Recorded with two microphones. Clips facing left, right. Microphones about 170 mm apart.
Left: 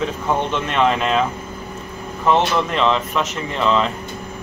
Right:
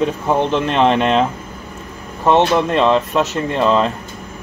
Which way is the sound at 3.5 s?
45° right (ahead or behind).